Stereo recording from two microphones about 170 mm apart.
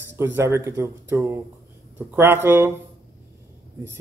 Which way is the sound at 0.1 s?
15° right (ahead or behind).